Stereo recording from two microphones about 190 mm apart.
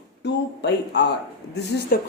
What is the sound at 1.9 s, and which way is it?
Speech, 50° left (ahead or behind).